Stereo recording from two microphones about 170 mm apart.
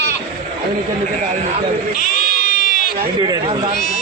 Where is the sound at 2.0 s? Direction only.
55° left (ahead or behind).